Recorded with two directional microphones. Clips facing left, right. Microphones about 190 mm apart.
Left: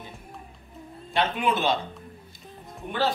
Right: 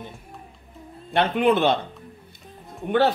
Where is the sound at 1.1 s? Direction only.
60° right (ahead or behind).